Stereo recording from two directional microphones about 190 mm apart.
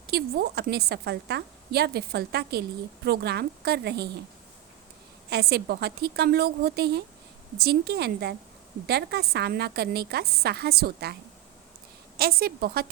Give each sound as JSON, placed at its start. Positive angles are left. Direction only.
{"t": 0.1, "sound": "a woman's voice", "side_deg": -55}
{"t": 5.3, "sound": "a woman's voice", "side_deg": -55}